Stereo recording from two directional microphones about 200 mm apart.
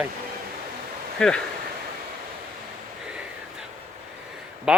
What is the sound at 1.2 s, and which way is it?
Speech, 5° left (ahead or behind).